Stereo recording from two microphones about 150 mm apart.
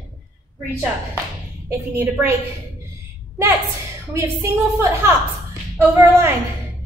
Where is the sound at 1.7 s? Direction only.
15° right (ahead or behind).